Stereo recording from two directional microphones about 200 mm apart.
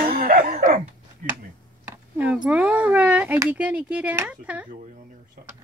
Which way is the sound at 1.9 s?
10° right (ahead or behind).